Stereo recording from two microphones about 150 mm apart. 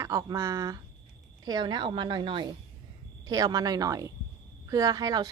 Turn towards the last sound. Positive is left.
turn(degrees=-25)  # may be behind; listen again after turning